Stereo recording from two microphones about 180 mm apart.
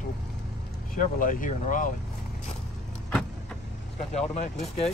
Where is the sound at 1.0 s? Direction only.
50° left (ahead or behind).